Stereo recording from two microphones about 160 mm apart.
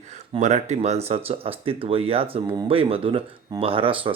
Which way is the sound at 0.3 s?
45° right (ahead or behind).